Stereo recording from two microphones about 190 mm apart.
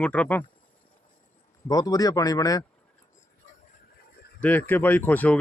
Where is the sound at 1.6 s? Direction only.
20° left (ahead or behind).